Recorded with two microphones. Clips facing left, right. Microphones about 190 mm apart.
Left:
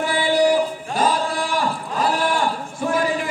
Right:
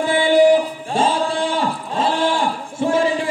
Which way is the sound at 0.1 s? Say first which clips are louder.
Right 5 dB; 20° right (ahead or behind).